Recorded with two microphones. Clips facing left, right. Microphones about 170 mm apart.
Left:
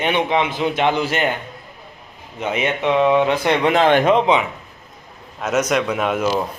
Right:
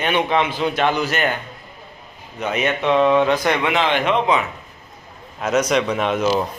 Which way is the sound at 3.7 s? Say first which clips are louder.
Left 5 dB; 45° left (ahead or behind).